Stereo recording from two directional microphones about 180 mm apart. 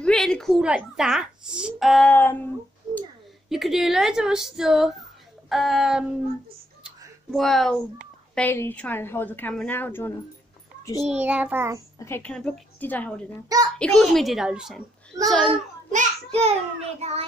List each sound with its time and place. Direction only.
0.0 s a woman's voice: 5° left (ahead or behind)
3.4 s speech: centre (ahead or behind)
6.8 s a sound: centre (ahead or behind)
8.4 s a woman's voice: 10° left (ahead or behind)
10.8 s a sound: 20° left (ahead or behind)
11.1 s child singing: 5° right (ahead or behind)
12.0 s a woman's voice: 10° left (ahead or behind)
15.9 s a child's voice: 40° right (ahead or behind)